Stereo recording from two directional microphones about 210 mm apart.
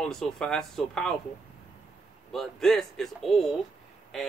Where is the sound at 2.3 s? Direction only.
Centre (ahead or behind).